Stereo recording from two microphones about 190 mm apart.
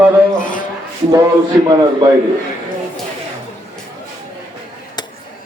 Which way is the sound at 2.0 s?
25° right (ahead or behind).